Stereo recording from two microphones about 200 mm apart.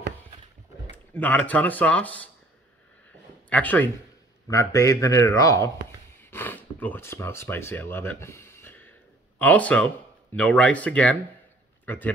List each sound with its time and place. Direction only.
0.9 s speech: 10° left (ahead or behind)
3.4 s a man's voice: 10° left (ahead or behind)
6.1 s a sound: 10° left (ahead or behind)
9.4 s a man's voice: 5° left (ahead or behind)